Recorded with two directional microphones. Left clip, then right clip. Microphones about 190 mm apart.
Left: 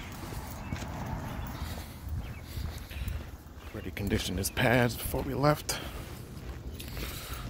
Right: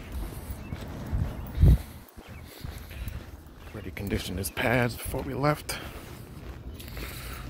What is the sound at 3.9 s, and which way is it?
Speech, 10° left (ahead or behind).